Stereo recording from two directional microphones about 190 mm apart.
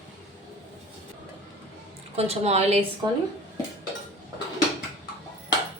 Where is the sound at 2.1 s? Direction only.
35° right (ahead or behind).